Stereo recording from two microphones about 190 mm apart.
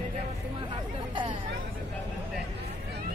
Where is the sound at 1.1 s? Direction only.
25° right (ahead or behind).